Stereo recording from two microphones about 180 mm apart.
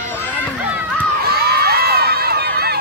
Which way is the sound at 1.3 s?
60° right (ahead or behind).